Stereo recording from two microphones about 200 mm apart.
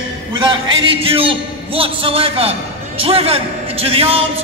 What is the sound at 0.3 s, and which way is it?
A man's voice, 25° right (ahead or behind).